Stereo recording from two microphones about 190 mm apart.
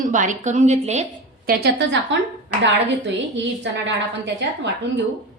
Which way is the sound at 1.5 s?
65° right (ahead or behind).